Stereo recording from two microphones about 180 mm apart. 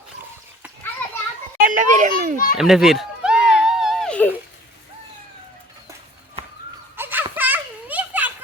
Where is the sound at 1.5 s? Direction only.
45° right (ahead or behind).